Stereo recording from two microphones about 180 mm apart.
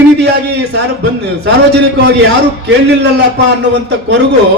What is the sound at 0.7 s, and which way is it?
A man's voice, 70° right (ahead or behind).